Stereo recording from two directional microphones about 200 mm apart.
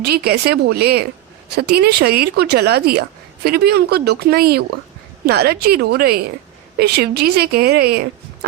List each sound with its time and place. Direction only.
0.0 s speech: 50° right (ahead or behind)